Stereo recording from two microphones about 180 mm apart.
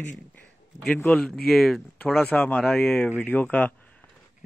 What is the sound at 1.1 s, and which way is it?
A man's voice, centre (ahead or behind).